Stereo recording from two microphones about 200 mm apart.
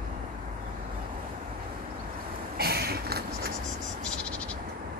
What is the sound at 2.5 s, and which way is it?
Vehicle, 50° right (ahead or behind).